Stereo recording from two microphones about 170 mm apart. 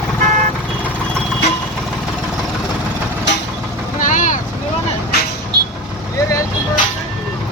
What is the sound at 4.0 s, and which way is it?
Vehicle, 50° left (ahead or behind).